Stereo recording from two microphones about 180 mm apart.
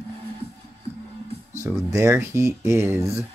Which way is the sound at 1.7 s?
10° right (ahead or behind).